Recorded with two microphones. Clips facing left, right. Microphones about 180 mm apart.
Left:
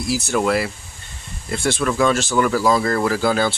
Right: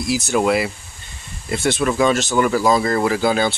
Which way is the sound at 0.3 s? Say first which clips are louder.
Right 2 dB; 10° right (ahead or behind).